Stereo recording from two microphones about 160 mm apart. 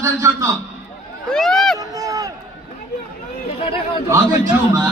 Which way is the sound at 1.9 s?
20° right (ahead or behind).